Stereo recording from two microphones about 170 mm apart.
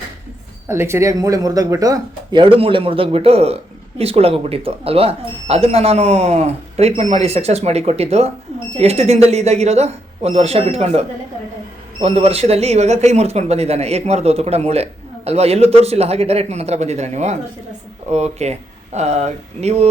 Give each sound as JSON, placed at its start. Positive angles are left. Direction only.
{"t": 0.7, "sound": "speech", "side_deg": -15}